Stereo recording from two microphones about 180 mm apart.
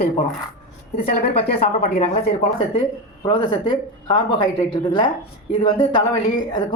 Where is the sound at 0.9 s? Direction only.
55° left (ahead or behind).